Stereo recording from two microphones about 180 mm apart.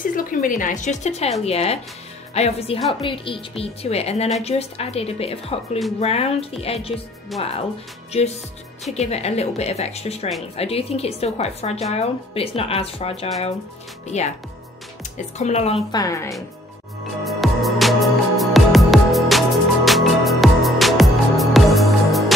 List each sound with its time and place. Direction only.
0.0 s a woman's voice: 50° left (ahead or behind); by 13.3 s 30° left (ahead or behind)
15.3 s speech: 40° left (ahead or behind)
15.9 s speech: 20° left (ahead or behind)
17.2 s music: centre (ahead or behind)